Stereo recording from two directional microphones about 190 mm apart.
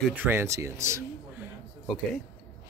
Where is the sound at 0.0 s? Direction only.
10° right (ahead or behind).